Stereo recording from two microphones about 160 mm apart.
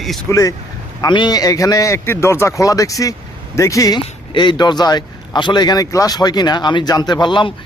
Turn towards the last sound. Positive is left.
turn(degrees=30)  # may be behind; listen again after turning